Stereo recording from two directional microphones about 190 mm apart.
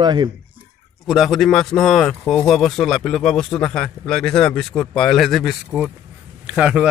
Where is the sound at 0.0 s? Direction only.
25° right (ahead or behind).